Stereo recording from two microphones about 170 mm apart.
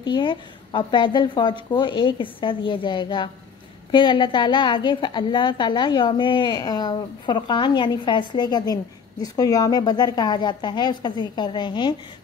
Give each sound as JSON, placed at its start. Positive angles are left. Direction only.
{"t": 0.0, "sound": "a woman's voice", "side_deg": 25}